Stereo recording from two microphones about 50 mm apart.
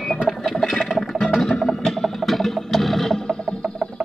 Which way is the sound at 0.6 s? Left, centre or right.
Centre.